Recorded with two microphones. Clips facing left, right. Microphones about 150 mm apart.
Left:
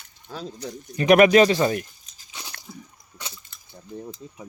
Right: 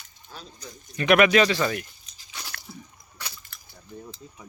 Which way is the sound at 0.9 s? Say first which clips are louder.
Left 4 dB; 40° left (ahead or behind).